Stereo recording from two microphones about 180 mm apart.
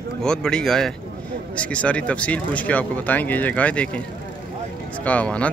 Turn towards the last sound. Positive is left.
turn(degrees=10)  # may be behind; listen again after turning